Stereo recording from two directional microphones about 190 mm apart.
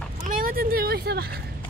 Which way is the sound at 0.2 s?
50° right (ahead or behind).